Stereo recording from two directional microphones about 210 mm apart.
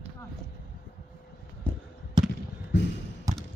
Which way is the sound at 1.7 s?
10° left (ahead or behind).